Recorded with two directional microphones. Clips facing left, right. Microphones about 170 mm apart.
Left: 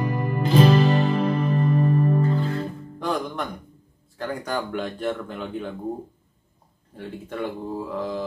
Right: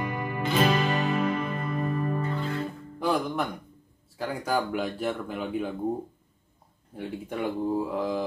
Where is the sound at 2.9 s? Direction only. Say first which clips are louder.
Right 1 dB; 5° right (ahead or behind).